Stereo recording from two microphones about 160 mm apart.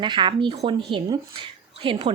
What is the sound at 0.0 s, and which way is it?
A woman's voice, 30° right (ahead or behind).